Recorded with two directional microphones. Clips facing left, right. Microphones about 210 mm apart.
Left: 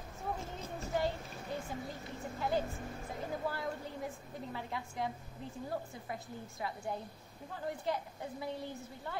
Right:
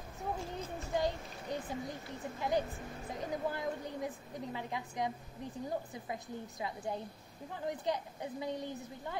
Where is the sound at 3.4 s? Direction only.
20° right (ahead or behind).